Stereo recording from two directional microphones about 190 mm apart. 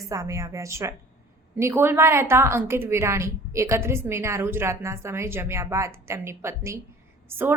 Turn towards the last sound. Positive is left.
turn(degrees=-10)  # may be behind; listen again after turning